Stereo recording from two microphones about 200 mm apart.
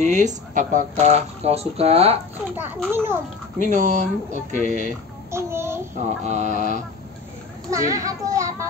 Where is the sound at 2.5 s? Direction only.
10° right (ahead or behind).